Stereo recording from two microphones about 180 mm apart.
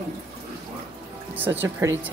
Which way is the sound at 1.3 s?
10° right (ahead or behind).